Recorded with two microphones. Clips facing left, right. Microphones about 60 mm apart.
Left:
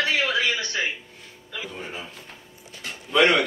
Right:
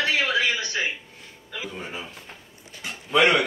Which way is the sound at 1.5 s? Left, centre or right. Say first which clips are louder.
Even; centre.